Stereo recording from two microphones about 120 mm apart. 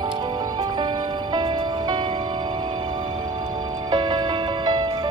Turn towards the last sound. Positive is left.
turn(degrees=-35)  # may be behind; listen again after turning